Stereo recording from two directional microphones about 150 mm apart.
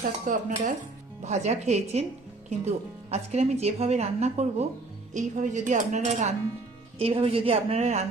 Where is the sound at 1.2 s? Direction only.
50° right (ahead or behind).